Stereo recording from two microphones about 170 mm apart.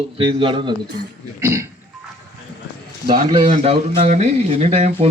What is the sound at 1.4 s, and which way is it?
Speech, 15° right (ahead or behind).